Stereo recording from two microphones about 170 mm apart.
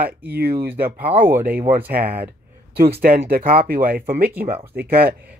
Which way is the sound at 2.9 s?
60° right (ahead or behind).